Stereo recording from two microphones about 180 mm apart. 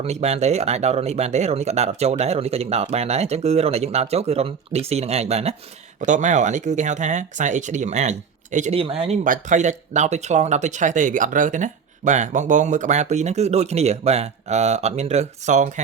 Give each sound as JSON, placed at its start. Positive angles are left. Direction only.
{"t": 0.0, "sound": "speech", "side_deg": -35}